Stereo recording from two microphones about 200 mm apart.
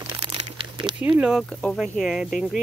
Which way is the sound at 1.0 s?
5° right (ahead or behind).